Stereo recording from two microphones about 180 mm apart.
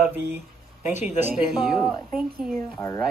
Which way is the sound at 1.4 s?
Centre (ahead or behind).